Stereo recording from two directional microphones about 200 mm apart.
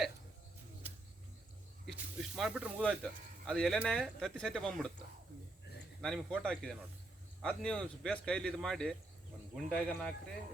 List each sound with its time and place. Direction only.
2.1 s speech: 5° right (ahead or behind)
6.0 s speech: centre (ahead or behind)